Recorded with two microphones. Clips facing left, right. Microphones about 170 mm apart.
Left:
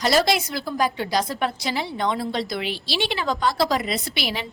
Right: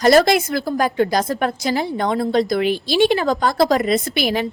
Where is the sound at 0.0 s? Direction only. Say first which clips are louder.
Right 7 dB; 50° right (ahead or behind).